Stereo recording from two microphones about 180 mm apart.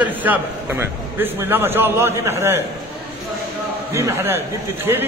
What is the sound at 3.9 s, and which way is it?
A man's voice, 15° right (ahead or behind).